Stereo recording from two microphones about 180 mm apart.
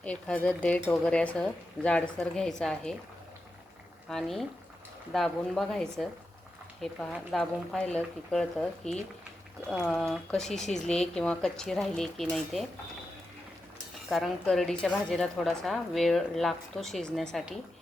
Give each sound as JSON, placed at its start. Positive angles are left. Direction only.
{"t": 0.0, "sound": "speech", "side_deg": 5}
{"t": 4.1, "sound": "a woman's voice", "side_deg": 0}
{"t": 14.1, "sound": "a woman's voice", "side_deg": 0}